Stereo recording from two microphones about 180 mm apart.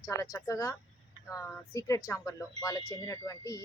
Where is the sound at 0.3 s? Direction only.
20° left (ahead or behind).